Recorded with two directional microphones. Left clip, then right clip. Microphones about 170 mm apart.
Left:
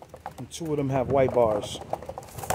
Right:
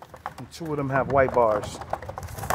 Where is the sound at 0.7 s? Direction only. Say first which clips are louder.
Right 2 dB; 15° left (ahead or behind).